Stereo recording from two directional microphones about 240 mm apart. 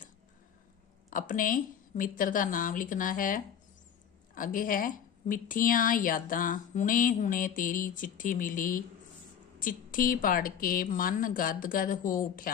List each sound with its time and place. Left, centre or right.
1.1 s a woman's voice: left